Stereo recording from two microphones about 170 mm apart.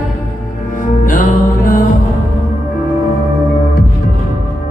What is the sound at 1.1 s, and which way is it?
Music, 50° left (ahead or behind).